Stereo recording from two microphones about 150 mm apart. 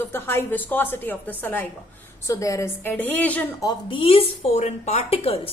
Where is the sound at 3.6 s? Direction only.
25° left (ahead or behind).